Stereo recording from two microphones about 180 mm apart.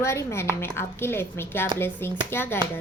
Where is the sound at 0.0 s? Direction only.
15° left (ahead or behind).